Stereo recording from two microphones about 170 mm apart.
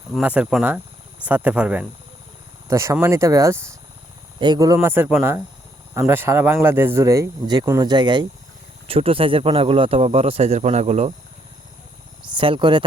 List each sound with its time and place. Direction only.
0.2 s speech: 10° right (ahead or behind)
2.6 s speech: 15° right (ahead or behind); by 11.1 s 40° right (ahead or behind)
12.4 s speech: 30° right (ahead or behind)